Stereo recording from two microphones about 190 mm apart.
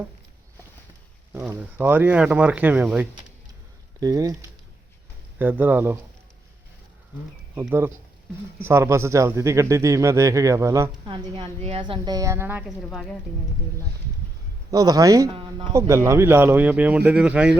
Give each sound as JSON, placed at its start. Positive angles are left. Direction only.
{"t": 1.3, "sound": "a man's voice", "side_deg": -10}
{"t": 7.5, "sound": "a man's voice", "side_deg": -10}
{"t": 11.1, "sound": "a man's voice", "side_deg": -30}
{"t": 14.7, "sound": "a man's voice", "side_deg": -20}